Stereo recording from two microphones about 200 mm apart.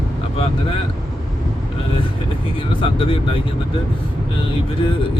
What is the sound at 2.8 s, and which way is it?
Speech, 25° left (ahead or behind).